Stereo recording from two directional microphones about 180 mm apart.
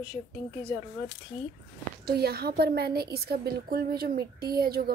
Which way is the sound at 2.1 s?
60° right (ahead or behind).